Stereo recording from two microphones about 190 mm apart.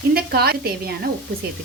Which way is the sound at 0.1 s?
55° right (ahead or behind).